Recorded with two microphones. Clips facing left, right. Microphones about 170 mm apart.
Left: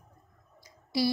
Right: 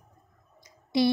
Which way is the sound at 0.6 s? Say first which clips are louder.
Right 5 dB; 20° right (ahead or behind).